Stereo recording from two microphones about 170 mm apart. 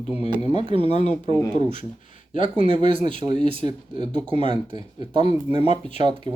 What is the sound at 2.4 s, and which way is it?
Speech, 30° right (ahead or behind).